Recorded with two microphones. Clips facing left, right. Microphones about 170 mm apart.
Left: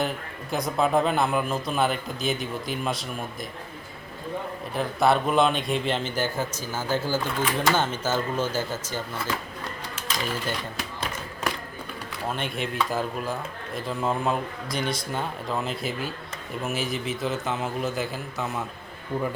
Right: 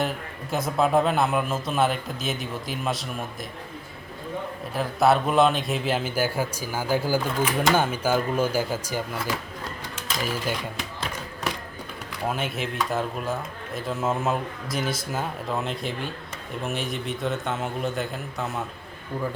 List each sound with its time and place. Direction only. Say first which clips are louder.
0.5 s a man's voice: right 1 dB; centre (ahead or behind)
4.7 s a man's voice: right 1 dB; centre (ahead or behind)
12.3 s a man's voice: even; 5° right (ahead or behind)
19.1 s speech: left 2 dB; 25° left (ahead or behind)